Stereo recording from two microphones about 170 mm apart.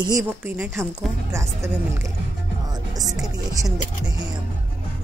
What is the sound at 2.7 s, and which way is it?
Music, 20° right (ahead or behind).